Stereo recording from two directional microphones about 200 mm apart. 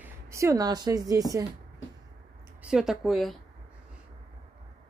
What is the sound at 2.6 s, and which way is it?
Speech, 5° right (ahead or behind).